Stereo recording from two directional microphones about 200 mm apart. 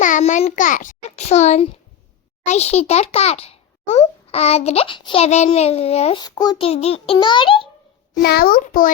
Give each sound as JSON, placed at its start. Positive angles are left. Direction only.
{"t": 0.0, "sound": "a sound", "side_deg": 40}
{"t": 2.5, "sound": "a child's voice", "side_deg": 30}
{"t": 8.1, "sound": "a child's voice", "side_deg": 50}